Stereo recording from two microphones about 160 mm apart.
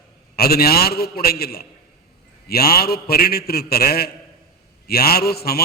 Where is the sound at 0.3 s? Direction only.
75° left (ahead or behind).